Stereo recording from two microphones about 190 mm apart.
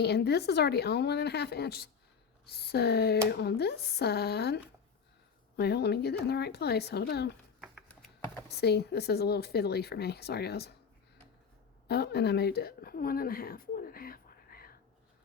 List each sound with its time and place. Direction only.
0.0 s speech: 60° left (ahead or behind)
8.4 s speech: 60° left (ahead or behind)
11.9 s speech: 60° left (ahead or behind)